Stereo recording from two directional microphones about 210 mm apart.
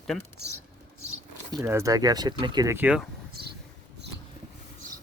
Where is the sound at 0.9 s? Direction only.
90° left.